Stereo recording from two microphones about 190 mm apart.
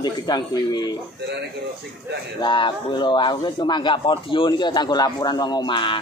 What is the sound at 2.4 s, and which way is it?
A man's voice, 25° left (ahead or behind).